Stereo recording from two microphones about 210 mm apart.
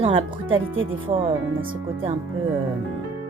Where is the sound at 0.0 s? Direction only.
25° right (ahead or behind).